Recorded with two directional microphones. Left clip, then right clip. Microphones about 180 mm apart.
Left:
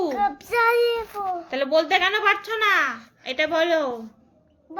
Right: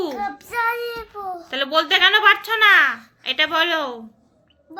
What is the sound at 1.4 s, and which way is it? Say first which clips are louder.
A woman's voice: right 2 dB; 5° left (ahead or behind).